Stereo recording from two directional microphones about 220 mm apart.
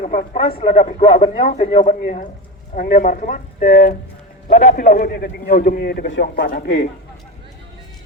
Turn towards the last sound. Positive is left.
turn(degrees=45)  # may be behind; listen again after turning